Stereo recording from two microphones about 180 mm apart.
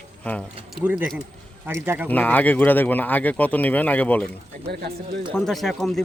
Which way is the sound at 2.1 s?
10° left (ahead or behind).